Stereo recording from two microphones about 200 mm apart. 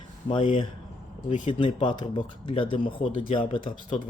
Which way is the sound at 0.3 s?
25° left (ahead or behind).